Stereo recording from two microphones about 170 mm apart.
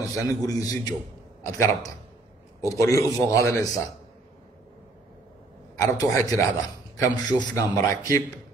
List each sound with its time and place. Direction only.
0.3 s a man's voice: 20° left (ahead or behind)
5.8 s a man's voice: 20° left (ahead or behind)